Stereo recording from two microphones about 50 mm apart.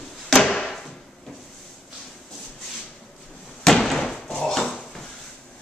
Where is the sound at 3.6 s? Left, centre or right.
Centre.